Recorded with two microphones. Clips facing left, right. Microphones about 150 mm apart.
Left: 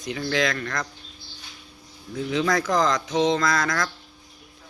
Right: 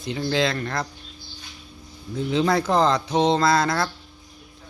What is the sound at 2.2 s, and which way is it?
Speech, 30° right (ahead or behind).